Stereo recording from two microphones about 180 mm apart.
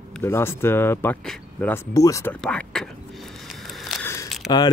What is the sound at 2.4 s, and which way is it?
Speech, 5° left (ahead or behind).